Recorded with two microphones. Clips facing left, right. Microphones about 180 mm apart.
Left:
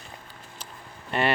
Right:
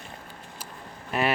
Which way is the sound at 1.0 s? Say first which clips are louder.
Left 1 dB; 5° right (ahead or behind).